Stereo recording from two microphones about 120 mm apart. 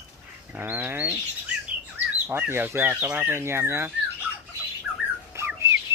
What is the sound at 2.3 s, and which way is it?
Speech, 15° right (ahead or behind).